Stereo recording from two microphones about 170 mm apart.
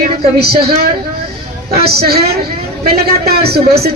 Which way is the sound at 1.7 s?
65° right (ahead or behind).